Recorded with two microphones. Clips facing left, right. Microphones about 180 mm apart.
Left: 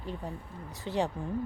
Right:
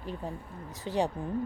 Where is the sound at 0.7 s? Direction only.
20° left (ahead or behind).